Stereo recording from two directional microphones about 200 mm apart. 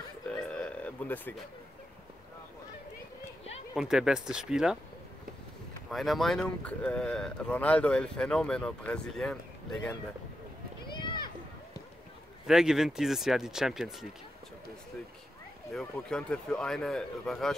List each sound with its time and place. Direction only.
0.4 s a sound: 5° left (ahead or behind)
3.7 s speech: 5° right (ahead or behind)
5.9 s speech: centre (ahead or behind)
10.9 s a sound: 20° left (ahead or behind)
12.4 s speech: 5° right (ahead or behind)
15.7 s speech: 5° left (ahead or behind)